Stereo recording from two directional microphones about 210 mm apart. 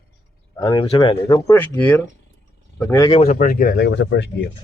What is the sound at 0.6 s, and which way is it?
Speech, 25° left (ahead or behind).